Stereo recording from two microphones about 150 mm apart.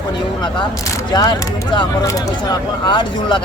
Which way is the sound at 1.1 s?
25° left (ahead or behind).